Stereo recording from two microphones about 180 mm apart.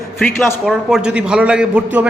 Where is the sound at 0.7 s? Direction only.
5° right (ahead or behind).